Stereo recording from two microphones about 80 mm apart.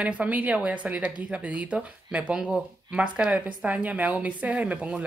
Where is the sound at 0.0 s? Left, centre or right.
Centre.